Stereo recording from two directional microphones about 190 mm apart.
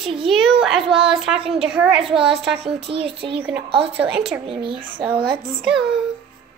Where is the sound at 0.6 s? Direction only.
Centre (ahead or behind).